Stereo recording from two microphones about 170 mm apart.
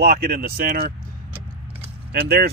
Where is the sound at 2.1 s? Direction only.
70° right (ahead or behind).